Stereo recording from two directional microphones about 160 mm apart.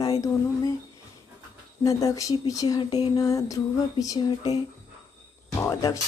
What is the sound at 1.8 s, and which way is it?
A woman's voice, 20° left (ahead or behind).